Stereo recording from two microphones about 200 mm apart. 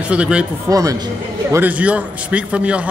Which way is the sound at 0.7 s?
15° right (ahead or behind).